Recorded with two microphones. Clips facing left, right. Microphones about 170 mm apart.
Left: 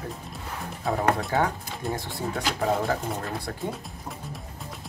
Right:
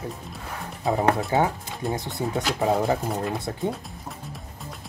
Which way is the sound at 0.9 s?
20° right (ahead or behind).